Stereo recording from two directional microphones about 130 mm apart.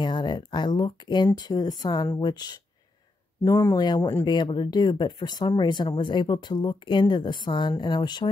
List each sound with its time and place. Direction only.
0.0 s speech: 35° left (ahead or behind)